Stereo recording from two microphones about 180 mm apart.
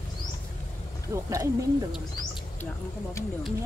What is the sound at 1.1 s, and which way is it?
Speech, 15° right (ahead or behind).